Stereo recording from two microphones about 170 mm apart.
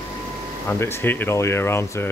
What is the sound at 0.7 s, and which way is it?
Speech, 15° left (ahead or behind).